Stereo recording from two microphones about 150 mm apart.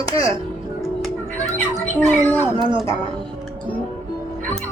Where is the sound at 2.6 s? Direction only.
35° right (ahead or behind).